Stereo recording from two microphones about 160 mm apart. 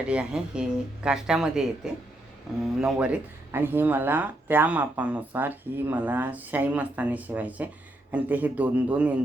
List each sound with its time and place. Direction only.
0.1 s speech: 5° right (ahead or behind)